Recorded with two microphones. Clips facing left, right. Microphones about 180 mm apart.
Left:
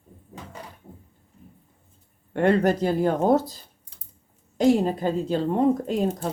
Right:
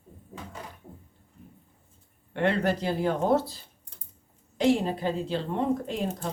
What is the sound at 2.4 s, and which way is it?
Speech, 45° left (ahead or behind).